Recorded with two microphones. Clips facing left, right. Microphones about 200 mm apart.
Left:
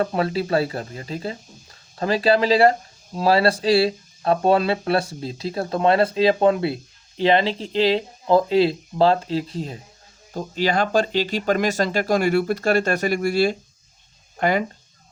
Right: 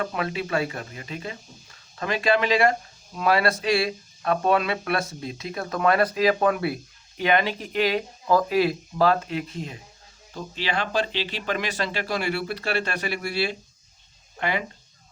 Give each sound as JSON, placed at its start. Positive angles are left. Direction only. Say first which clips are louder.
{"t": 0.0, "sound": "speech", "louder": "left 6 dB", "side_deg": 35}